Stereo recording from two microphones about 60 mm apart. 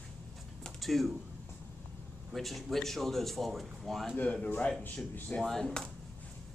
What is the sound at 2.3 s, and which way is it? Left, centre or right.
Speech, centre.